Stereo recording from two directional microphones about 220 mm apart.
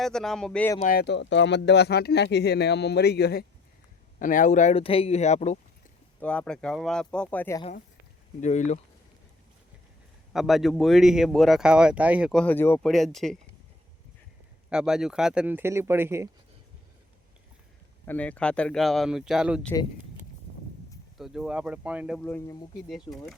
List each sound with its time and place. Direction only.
0.0 s speech: centre (ahead or behind)
0.8 s speech: 40° left (ahead or behind)
4.2 s speech: 35° left (ahead or behind)
6.1 s speech: 5° left (ahead or behind)
8.4 s speech: 35° left (ahead or behind)
10.3 s speech: centre (ahead or behind)
14.7 s speech: 5° right (ahead or behind)
18.0 s speech: 10° left (ahead or behind)
21.2 s speech: centre (ahead or behind)